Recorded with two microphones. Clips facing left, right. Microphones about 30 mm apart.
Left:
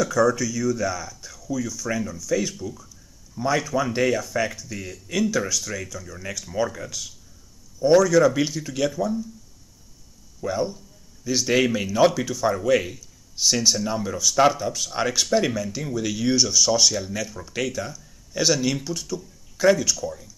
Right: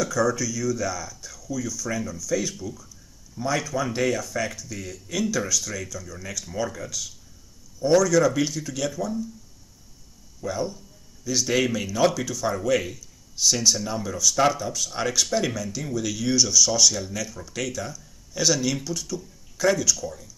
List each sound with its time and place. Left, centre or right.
0.0 s speech: centre
10.4 s speech: centre